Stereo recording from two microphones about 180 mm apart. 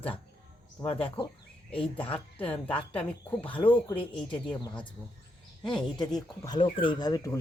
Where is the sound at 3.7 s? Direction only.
10° left (ahead or behind).